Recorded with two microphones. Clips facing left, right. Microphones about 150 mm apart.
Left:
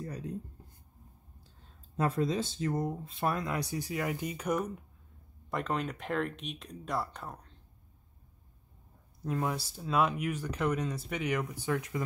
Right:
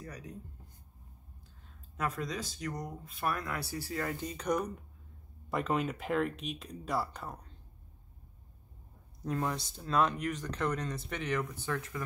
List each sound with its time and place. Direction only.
0.0 s writing: 30° left (ahead or behind)
2.0 s speech: 25° left (ahead or behind); by 7.5 s 5° right (ahead or behind)
9.2 s speech: 5° left (ahead or behind)